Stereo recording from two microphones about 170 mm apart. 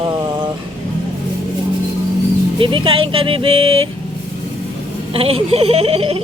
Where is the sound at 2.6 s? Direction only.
30° right (ahead or behind).